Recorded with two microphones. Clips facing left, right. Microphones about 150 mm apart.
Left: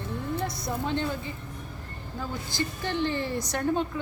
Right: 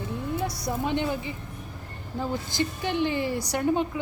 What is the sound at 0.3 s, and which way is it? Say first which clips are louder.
Speech: right 3 dB; 10° right (ahead or behind).